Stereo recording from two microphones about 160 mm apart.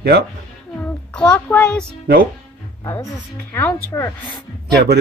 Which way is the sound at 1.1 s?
10° left (ahead or behind).